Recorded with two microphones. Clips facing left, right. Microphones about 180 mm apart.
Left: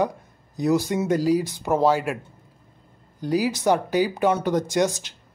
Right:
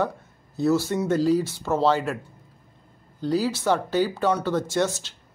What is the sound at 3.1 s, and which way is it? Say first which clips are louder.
Speech: left 1 dB; 15° left (ahead or behind).